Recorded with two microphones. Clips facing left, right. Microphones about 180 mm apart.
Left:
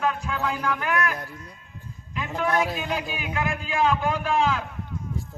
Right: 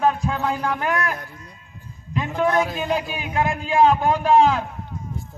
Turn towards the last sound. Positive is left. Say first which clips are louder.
# right 7 dB
turn(degrees=-40)  # may be behind; listen again after turning